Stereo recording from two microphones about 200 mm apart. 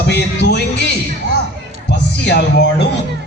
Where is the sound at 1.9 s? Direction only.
55° left (ahead or behind).